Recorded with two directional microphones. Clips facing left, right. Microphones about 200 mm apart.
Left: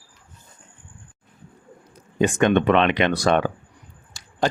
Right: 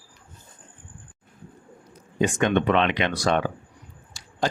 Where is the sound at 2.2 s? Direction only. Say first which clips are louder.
Left 3 dB; 60° left (ahead or behind).